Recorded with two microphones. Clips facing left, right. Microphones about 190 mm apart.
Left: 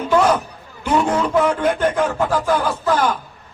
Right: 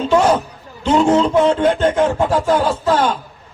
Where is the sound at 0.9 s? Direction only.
25° right (ahead or behind).